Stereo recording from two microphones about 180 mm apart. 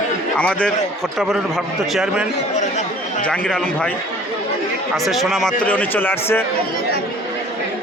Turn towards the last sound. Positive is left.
turn(degrees=10)  # may be behind; listen again after turning